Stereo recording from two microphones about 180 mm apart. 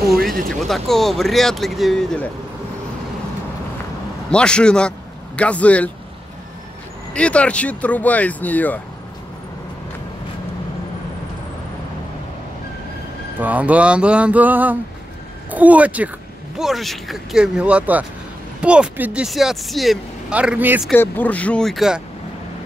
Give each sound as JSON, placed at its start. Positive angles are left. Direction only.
{"t": 0.5, "sound": "speech", "side_deg": 0}
{"t": 4.3, "sound": "speech", "side_deg": 5}
{"t": 7.2, "sound": "speech", "side_deg": 5}
{"t": 13.4, "sound": "speech", "side_deg": -10}
{"t": 20.9, "sound": "speech", "side_deg": 10}